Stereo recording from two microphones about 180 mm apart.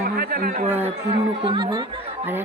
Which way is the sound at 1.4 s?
25° right (ahead or behind).